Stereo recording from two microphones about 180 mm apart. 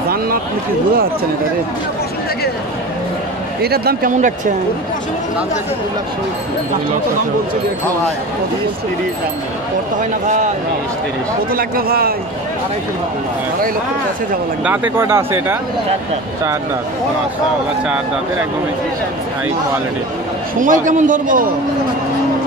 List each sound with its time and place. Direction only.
3.6 s speech: 60° right (ahead or behind)
11.5 s speech: 55° right (ahead or behind)
14.6 s speech: 10° right (ahead or behind)
20.5 s a man's voice: 45° right (ahead or behind)